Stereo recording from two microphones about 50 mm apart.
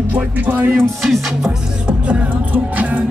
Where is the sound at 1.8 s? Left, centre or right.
Right.